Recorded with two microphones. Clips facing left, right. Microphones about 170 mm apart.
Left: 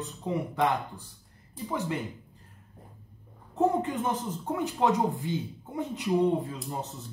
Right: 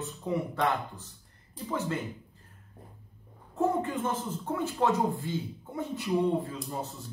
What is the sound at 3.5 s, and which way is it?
Speech, 15° left (ahead or behind).